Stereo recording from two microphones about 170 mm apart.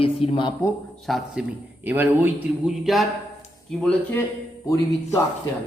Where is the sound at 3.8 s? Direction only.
10° left (ahead or behind).